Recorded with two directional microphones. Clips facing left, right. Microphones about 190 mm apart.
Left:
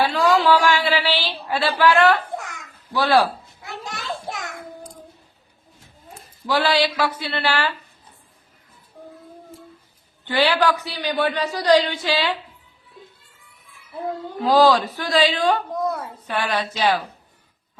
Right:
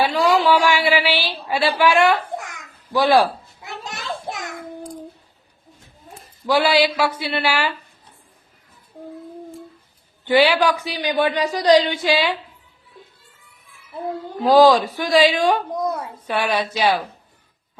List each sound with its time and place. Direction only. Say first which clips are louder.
0.0 s a sound: right 1 dB; 15° right (ahead or behind)
6.5 s a man's voice: right 3 dB; 10° right (ahead or behind)
10.2 s a man's voice: right 3 dB; 15° right (ahead or behind)
14.4 s a man's voice: right 3 dB; 15° right (ahead or behind)